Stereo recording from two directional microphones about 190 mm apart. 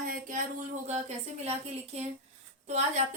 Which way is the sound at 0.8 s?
35° right (ahead or behind).